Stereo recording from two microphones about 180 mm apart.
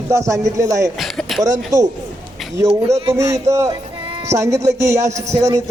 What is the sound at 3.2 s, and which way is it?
A man's voice, 15° right (ahead or behind).